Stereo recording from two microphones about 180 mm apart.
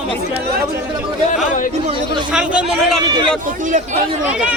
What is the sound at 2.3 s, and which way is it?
Speech, 5° right (ahead or behind).